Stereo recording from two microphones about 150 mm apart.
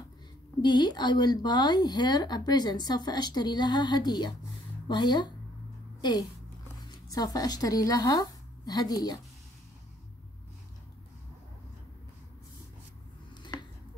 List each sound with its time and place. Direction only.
0.6 s speech: 30° left (ahead or behind)
5.9 s a sound: 30° left (ahead or behind)
6.9 s speech: 25° left (ahead or behind)